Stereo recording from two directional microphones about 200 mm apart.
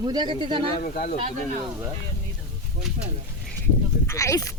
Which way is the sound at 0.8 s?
45° left (ahead or behind).